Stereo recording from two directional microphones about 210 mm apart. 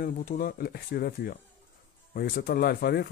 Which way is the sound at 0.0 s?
45° left (ahead or behind).